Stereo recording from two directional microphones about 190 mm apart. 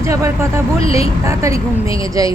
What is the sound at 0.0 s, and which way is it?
A woman's voice, 15° right (ahead or behind).